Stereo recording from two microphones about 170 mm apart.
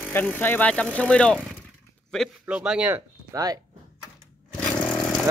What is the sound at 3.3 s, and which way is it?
Speech, 20° right (ahead or behind).